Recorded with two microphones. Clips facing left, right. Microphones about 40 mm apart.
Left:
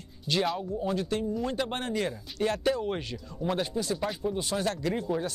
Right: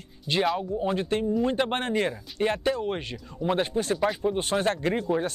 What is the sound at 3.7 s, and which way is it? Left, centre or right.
Speech, right.